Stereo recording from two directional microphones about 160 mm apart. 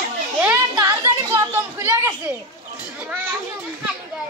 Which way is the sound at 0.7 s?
20° right (ahead or behind).